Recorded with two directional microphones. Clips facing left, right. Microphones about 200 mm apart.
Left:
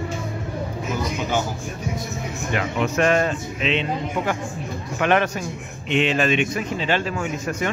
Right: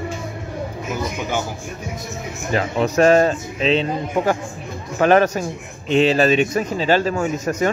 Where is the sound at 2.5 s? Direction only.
35° right (ahead or behind).